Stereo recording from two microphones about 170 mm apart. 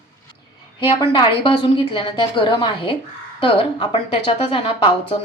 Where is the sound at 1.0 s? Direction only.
30° left (ahead or behind).